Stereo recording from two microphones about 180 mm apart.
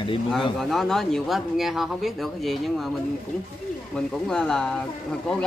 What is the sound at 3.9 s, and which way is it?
Speech, 5° left (ahead or behind).